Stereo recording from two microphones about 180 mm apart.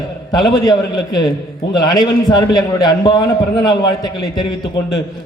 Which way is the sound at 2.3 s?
20° left (ahead or behind).